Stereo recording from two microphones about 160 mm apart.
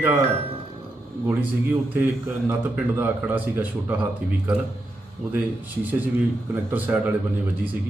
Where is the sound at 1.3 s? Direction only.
10° right (ahead or behind).